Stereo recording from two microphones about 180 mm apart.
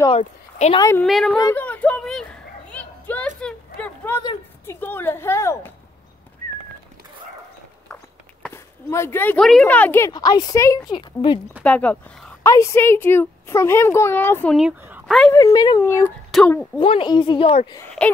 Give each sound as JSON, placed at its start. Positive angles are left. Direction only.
{"t": 0.1, "sound": "speech", "side_deg": 35}
{"t": 0.7, "sound": "speech", "side_deg": 15}
{"t": 1.0, "sound": "speech", "side_deg": 0}
{"t": 1.4, "sound": "a sound", "side_deg": 10}
{"t": 4.2, "sound": "a woman's voice", "side_deg": 20}
{"t": 7.9, "sound": "a sound", "side_deg": 10}
{"t": 9.5, "sound": "a woman's voice", "side_deg": 5}
{"t": 11.6, "sound": "speech", "side_deg": 10}
{"t": 14.8, "sound": "a sound", "side_deg": -10}
{"t": 15.0, "sound": "speech", "side_deg": 0}
{"t": 15.3, "sound": "speech", "side_deg": 20}
{"t": 16.3, "sound": "speech", "side_deg": 5}
{"t": 16.8, "sound": "a woman's voice", "side_deg": 30}
{"t": 18.0, "sound": "speech", "side_deg": 5}